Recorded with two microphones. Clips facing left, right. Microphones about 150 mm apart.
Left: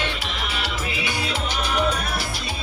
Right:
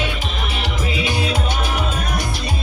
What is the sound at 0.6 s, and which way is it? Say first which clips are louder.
Music: right 8 dB; 20° right (ahead or behind).